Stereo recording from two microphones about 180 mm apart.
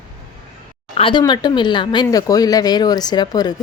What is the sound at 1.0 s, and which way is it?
Speech, 25° left (ahead or behind).